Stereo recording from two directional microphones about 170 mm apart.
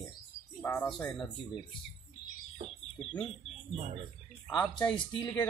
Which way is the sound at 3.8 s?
40° right (ahead or behind).